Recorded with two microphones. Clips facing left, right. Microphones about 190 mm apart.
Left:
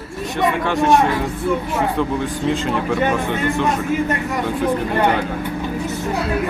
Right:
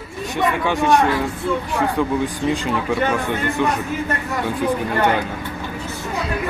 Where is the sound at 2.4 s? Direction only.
Centre (ahead or behind).